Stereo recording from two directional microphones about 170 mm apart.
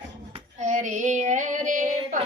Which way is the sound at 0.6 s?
45° right (ahead or behind).